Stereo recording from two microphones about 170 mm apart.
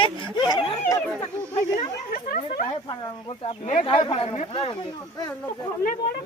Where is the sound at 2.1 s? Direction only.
50° left (ahead or behind).